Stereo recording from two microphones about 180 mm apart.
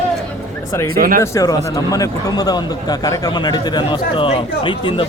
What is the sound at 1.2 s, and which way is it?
A man's voice, 15° left (ahead or behind).